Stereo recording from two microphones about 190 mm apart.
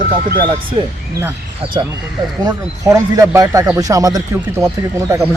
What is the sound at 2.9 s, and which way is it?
A man's voice, 15° right (ahead or behind).